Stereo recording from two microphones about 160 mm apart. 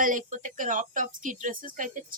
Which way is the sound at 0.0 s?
55° right (ahead or behind).